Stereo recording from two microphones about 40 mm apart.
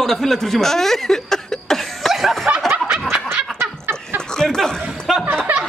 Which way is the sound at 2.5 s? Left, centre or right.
Right.